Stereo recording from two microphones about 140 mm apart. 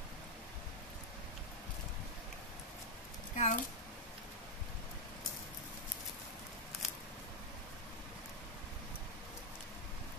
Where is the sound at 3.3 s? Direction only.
60° left (ahead or behind).